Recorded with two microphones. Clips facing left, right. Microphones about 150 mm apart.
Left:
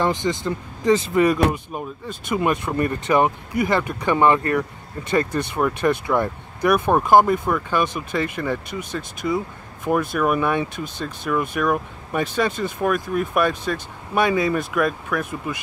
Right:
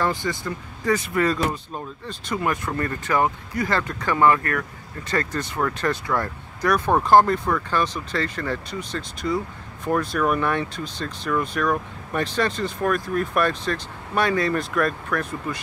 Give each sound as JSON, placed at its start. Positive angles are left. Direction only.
{"t": 0.0, "sound": "speech", "side_deg": 20}